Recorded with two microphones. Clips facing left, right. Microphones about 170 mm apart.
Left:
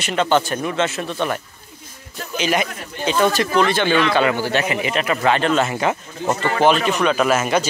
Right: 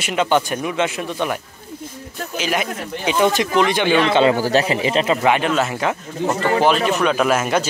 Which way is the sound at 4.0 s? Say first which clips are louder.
Right 3 dB; 25° right (ahead or behind).